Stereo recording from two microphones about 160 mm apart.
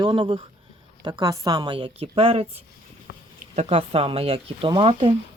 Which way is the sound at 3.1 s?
65° left (ahead or behind).